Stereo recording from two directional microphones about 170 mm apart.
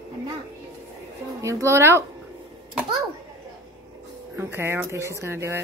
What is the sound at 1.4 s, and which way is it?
Speech, 15° right (ahead or behind).